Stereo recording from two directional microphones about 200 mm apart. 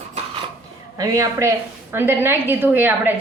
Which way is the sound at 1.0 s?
15° right (ahead or behind).